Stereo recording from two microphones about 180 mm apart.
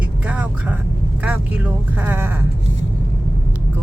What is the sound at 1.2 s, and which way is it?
Speech, 10° right (ahead or behind).